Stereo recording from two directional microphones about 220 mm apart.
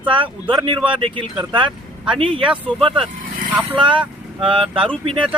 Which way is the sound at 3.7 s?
20° right (ahead or behind).